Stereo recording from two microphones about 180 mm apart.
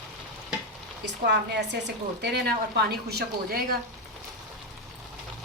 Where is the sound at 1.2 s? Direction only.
70° right (ahead or behind).